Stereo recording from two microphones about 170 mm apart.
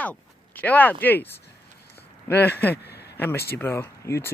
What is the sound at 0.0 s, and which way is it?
Speech, 10° left (ahead or behind).